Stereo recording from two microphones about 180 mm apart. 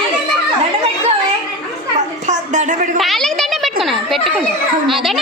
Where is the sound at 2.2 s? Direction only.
45° right (ahead or behind).